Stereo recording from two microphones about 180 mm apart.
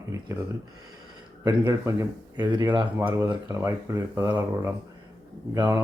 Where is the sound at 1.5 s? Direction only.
20° right (ahead or behind).